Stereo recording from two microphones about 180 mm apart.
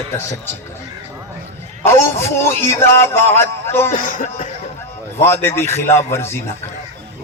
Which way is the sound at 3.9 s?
45° left (ahead or behind).